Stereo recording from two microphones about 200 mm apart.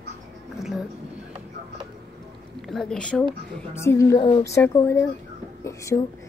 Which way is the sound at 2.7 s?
Centre (ahead or behind).